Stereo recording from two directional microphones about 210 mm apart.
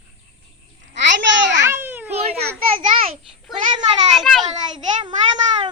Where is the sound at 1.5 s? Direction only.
10° right (ahead or behind).